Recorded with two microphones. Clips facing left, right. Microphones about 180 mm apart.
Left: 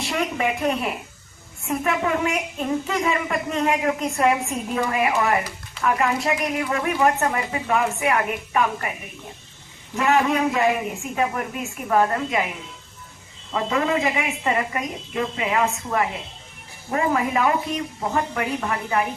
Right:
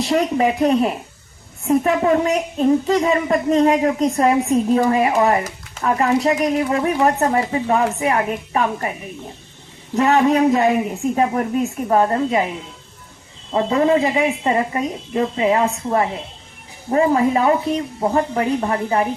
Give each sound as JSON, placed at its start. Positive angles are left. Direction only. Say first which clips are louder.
{"t": 0.0, "sound": "a woman's voice", "louder": "right 7 dB", "side_deg": -35}
{"t": 9.9, "sound": "a woman's voice", "louder": "right 5 dB", "side_deg": -35}